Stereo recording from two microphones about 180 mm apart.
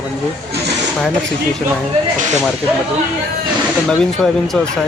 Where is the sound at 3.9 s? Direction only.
5° left (ahead or behind).